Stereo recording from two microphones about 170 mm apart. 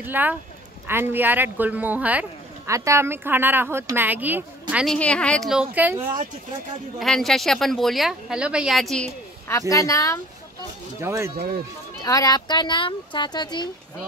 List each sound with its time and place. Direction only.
0.0 s speech: 10° right (ahead or behind)
4.8 s speech: 5° left (ahead or behind); by 5.9 s 10° right (ahead or behind)
7.0 s speech: centre (ahead or behind)
9.5 s a child's voice: 20° left (ahead or behind)
11.0 s speech: 15° right (ahead or behind)
12.0 s a child's voice: 20° left (ahead or behind)